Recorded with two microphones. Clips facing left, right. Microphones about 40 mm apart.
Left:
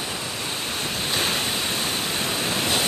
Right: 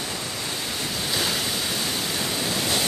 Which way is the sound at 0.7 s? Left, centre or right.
Left.